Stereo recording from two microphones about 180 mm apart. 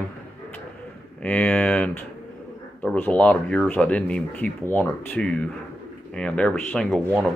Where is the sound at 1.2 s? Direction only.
5° left (ahead or behind).